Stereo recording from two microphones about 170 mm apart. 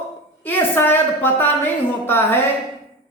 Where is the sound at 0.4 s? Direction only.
10° left (ahead or behind).